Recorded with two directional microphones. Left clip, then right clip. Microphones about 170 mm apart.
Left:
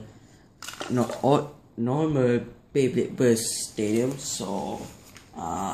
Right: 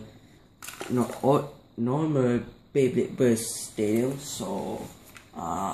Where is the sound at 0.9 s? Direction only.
20° left (ahead or behind).